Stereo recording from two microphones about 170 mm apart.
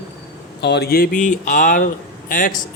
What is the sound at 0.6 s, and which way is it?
Speech, 80° left.